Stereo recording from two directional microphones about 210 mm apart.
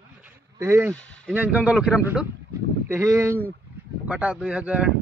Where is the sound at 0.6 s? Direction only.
15° right (ahead or behind).